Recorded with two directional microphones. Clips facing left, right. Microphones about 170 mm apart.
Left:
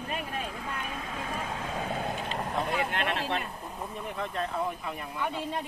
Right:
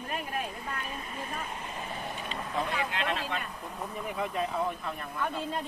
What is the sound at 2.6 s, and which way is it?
Speech, 55° left (ahead or behind).